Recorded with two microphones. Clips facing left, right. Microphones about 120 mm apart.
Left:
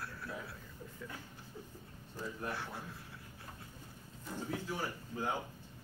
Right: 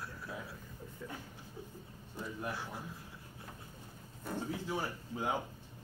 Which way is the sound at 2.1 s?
15° right (ahead or behind).